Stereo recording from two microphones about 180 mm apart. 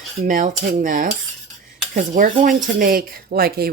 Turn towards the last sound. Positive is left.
turn(degrees=-60)  # may be behind; listen again after turning